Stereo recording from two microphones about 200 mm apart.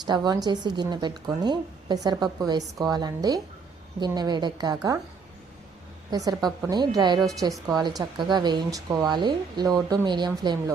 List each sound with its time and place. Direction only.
0.0 s a woman's voice: 20° right (ahead or behind)
6.1 s a woman's voice: 20° right (ahead or behind)
7.2 s a woman's voice: centre (ahead or behind)
7.9 s a woman's voice: 20° right (ahead or behind)